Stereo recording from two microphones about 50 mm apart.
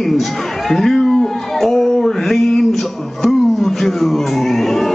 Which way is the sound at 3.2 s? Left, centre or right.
Centre.